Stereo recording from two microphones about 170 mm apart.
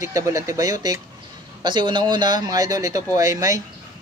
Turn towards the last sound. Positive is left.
turn(degrees=-20)  # may be behind; listen again after turning